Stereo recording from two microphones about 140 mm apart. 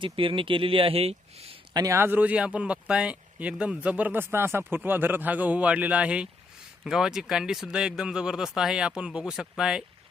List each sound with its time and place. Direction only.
0.0 s speech: 40° right (ahead or behind)
1.7 s speech: 25° right (ahead or behind); by 9.8 s 5° right (ahead or behind)